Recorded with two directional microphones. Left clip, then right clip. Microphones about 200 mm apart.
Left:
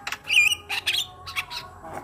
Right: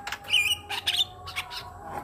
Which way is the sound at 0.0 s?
15° left (ahead or behind).